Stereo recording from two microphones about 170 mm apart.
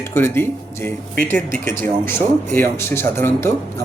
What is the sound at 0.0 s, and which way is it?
Speech, 15° left (ahead or behind).